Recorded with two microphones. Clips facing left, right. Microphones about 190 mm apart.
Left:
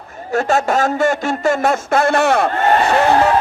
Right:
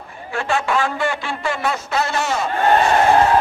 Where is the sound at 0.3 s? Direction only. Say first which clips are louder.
Left 5 dB; 40° left (ahead or behind); by 2.5 s 60° left (ahead or behind).